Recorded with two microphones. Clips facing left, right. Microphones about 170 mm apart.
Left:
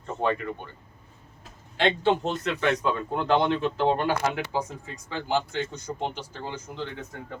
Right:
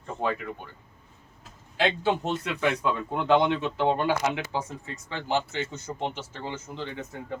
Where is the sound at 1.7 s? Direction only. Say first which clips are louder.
Left 2 dB; 5° right (ahead or behind).